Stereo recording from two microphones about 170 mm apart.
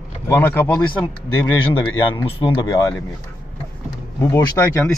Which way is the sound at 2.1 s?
30° left (ahead or behind).